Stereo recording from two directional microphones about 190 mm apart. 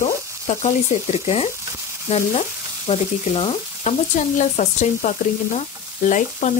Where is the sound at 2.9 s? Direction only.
30° left (ahead or behind).